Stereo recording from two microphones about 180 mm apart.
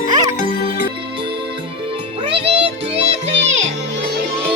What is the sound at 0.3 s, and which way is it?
Music, 50° left (ahead or behind).